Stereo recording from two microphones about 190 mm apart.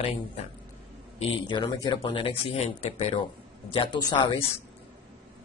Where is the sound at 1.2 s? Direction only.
25° left (ahead or behind).